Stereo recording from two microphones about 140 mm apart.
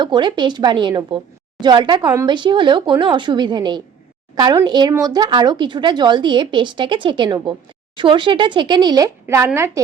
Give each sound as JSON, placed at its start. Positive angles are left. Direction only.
{"t": 0.0, "sound": "a woman's voice", "side_deg": -35}